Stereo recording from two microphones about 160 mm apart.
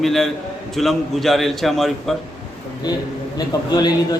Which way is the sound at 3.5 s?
25° left (ahead or behind).